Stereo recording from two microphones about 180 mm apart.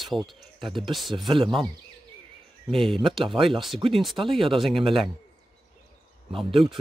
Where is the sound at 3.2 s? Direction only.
30° right (ahead or behind).